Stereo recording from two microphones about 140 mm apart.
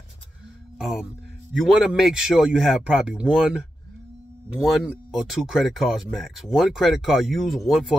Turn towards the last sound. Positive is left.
turn(degrees=0)  # may be behind; listen again after turning